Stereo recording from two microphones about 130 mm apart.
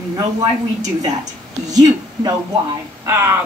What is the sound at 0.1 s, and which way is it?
A woman's voice, 30° right (ahead or behind).